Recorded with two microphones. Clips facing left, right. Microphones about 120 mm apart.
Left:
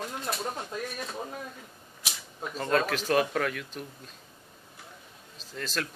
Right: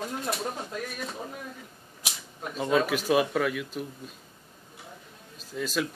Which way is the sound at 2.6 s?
5° right (ahead or behind).